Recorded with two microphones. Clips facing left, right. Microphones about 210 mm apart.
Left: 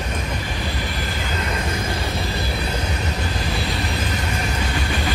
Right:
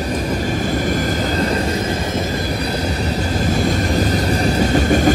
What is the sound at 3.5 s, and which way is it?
Vehicle, 45° right (ahead or behind).